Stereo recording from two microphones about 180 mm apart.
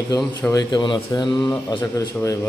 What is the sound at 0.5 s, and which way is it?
A man's voice, 20° left (ahead or behind).